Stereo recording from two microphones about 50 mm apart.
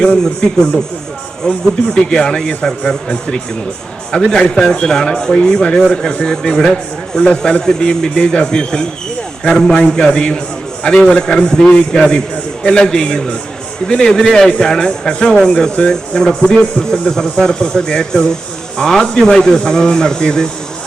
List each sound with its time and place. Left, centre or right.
0.0 s speech: centre
2.6 s speech: centre